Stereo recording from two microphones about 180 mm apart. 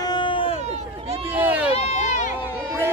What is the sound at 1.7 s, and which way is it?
Run, 40° left (ahead or behind).